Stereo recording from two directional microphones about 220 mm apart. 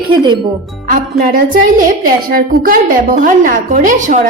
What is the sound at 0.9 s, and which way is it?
A woman's voice, 40° right (ahead or behind).